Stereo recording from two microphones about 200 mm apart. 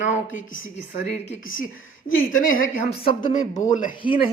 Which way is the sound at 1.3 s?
40° left (ahead or behind).